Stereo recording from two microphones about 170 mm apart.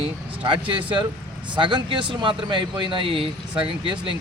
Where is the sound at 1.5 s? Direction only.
25° right (ahead or behind).